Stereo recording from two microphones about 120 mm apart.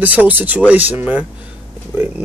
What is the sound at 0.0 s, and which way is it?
Speech, 15° right (ahead or behind).